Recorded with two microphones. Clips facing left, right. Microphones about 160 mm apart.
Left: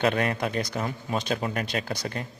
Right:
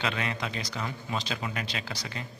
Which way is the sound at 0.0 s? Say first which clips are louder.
Left 7 dB; 50° left (ahead or behind).